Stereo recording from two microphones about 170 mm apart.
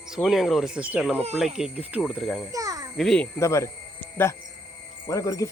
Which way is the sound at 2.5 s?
20° right (ahead or behind).